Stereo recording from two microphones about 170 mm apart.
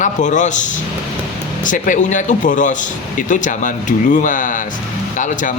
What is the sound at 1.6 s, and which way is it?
Speech, 50° left (ahead or behind).